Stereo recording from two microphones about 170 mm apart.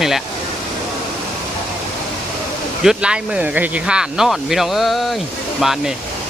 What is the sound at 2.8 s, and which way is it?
Speech, 5° right (ahead or behind).